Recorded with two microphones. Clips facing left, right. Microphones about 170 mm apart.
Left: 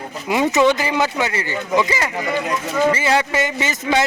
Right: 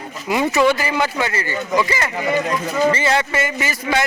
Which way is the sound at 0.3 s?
20° left (ahead or behind).